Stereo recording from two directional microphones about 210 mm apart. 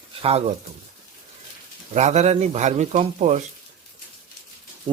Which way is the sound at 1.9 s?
35° right (ahead or behind).